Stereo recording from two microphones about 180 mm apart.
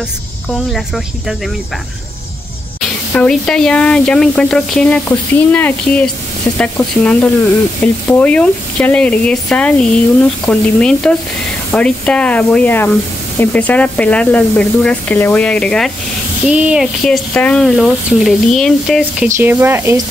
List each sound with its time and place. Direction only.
0.7 s speech: centre (ahead or behind)
3.1 s speech: 5° left (ahead or behind)
16.4 s speech: 5° right (ahead or behind)
19.2 s speech: 15° right (ahead or behind)